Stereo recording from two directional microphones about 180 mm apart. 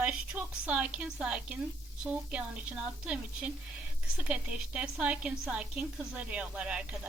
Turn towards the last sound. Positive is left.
turn(degrees=-5)  # may be behind; listen again after turning